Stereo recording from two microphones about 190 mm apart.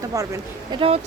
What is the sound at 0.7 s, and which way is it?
Speech, 30° right (ahead or behind).